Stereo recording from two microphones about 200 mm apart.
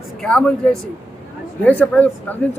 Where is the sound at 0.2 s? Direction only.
5° left (ahead or behind).